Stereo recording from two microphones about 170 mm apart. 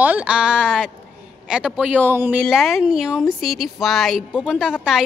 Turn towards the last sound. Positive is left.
turn(degrees=-5)  # may be behind; listen again after turning